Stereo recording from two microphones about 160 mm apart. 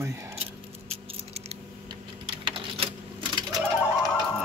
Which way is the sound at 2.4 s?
35° right (ahead or behind).